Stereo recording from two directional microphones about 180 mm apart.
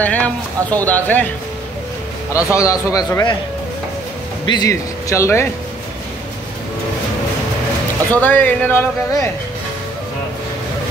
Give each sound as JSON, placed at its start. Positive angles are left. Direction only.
{"t": 0.0, "sound": "speech", "side_deg": 10}
{"t": 2.3, "sound": "speech", "side_deg": 15}
{"t": 4.5, "sound": "speech", "side_deg": 20}
{"t": 8.1, "sound": "speech", "side_deg": 10}